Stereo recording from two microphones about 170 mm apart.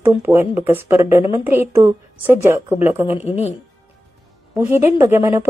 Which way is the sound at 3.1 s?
40° left (ahead or behind).